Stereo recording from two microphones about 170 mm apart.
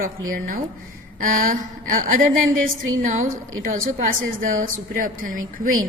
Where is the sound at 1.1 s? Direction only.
55° right (ahead or behind).